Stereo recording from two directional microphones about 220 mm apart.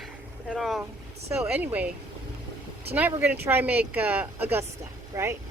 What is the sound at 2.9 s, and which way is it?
A woman's voice, 10° right (ahead or behind).